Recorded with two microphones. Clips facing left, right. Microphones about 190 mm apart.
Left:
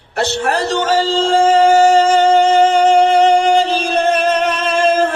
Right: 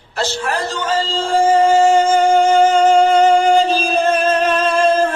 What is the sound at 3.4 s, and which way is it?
Music, 70° left (ahead or behind).